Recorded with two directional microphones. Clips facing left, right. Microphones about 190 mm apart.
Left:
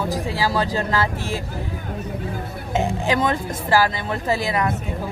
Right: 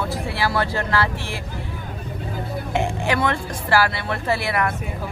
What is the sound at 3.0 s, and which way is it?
Speech, 15° left (ahead or behind).